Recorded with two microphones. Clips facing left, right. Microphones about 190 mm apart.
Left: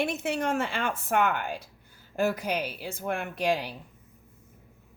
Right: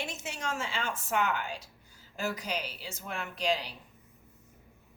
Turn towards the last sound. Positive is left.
turn(degrees=55)  # may be behind; listen again after turning